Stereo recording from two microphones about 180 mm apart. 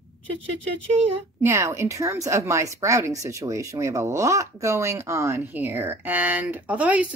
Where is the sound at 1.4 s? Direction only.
15° right (ahead or behind).